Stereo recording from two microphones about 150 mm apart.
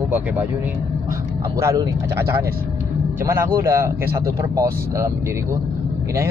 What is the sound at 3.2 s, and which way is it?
Speech, 20° right (ahead or behind).